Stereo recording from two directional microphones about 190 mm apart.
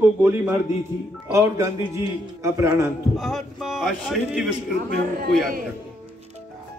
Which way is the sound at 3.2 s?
Centre (ahead or behind).